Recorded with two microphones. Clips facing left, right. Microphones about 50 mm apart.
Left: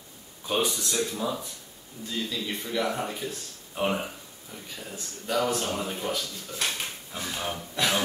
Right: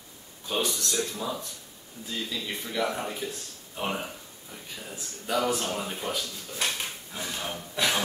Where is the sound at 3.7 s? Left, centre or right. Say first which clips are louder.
Left 4 dB; centre.